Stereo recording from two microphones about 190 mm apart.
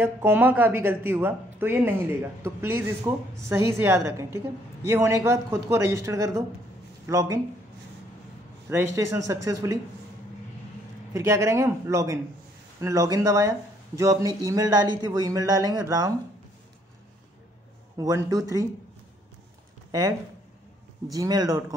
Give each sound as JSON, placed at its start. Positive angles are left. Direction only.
{"t": 0.0, "sound": "speech", "side_deg": -10}
{"t": 8.6, "sound": "speech", "side_deg": -15}
{"t": 11.1, "sound": "speech", "side_deg": -15}
{"t": 17.9, "sound": "speech", "side_deg": -15}
{"t": 19.9, "sound": "speech", "side_deg": -15}